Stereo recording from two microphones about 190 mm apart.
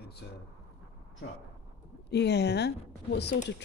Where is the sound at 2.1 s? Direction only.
60° left (ahead or behind).